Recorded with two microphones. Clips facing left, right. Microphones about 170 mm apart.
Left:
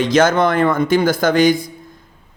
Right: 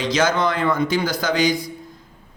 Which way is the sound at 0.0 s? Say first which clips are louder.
Left 6 dB; 50° left (ahead or behind).